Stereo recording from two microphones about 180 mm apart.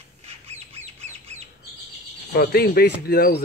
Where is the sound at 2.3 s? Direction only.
60° left (ahead or behind).